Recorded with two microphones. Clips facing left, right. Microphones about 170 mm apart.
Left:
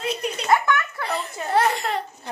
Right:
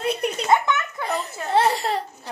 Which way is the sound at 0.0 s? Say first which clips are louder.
Right 3 dB; 55° right (ahead or behind).